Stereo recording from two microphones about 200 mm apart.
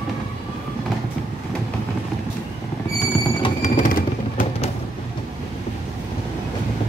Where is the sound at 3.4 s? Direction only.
40° left (ahead or behind).